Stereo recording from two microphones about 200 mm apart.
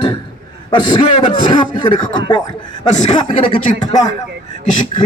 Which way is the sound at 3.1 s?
20° left (ahead or behind).